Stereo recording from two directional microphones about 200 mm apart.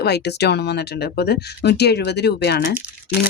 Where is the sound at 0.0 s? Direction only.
55° left (ahead or behind).